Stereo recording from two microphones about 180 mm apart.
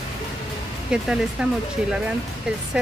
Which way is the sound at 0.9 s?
5° right (ahead or behind).